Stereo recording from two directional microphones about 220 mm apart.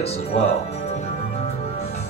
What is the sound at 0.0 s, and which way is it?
Speech, 30° left (ahead or behind).